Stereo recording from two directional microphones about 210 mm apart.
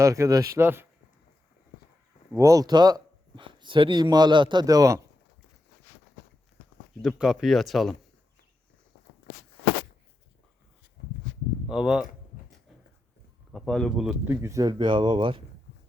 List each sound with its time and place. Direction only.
0.0 s speech: 15° right (ahead or behind)
2.3 s speech: 15° right (ahead or behind)
7.0 s speech: centre (ahead or behind)
11.7 s speech: 5° right (ahead or behind)
13.5 s speech: centre (ahead or behind); by 15.4 s 20° right (ahead or behind)